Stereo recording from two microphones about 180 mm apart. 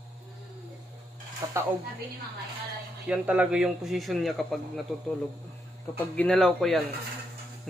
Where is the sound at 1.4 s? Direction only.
20° right (ahead or behind).